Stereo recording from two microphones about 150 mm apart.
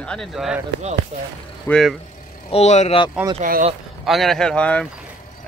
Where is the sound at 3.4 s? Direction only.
65° right (ahead or behind).